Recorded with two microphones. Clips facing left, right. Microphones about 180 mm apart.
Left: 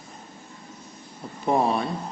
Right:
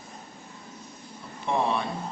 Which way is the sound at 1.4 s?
40° left (ahead or behind).